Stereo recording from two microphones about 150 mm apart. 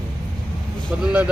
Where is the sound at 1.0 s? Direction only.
10° right (ahead or behind).